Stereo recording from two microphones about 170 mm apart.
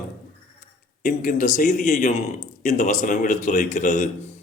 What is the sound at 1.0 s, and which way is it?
A man's voice, 50° left (ahead or behind).